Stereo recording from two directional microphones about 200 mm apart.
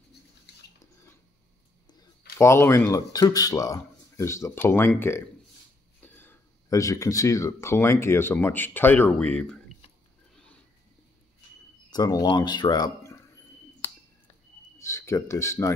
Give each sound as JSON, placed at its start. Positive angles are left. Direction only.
{"t": 2.3, "sound": "speech", "side_deg": 15}
{"t": 10.3, "sound": "a sound", "side_deg": 5}
{"t": 11.9, "sound": "speech", "side_deg": 20}
{"t": 14.8, "sound": "speech", "side_deg": 15}